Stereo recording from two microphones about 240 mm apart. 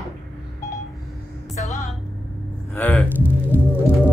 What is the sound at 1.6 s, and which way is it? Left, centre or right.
Music, left.